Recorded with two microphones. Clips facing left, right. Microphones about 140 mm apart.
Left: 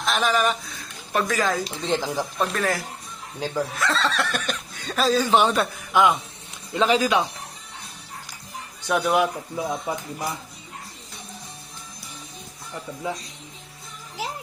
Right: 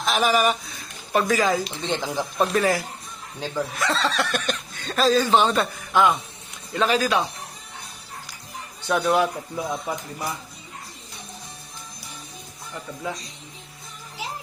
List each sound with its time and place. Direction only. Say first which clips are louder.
0.0 s speech: right 2 dB; 5° right (ahead or behind); by 7.3 s 15° left (ahead or behind)
8.9 s speech: even; 10° left (ahead or behind)